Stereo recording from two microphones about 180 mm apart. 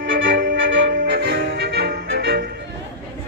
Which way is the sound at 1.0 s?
60° right (ahead or behind).